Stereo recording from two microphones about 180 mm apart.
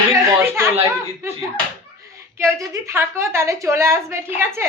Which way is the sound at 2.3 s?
15° right (ahead or behind).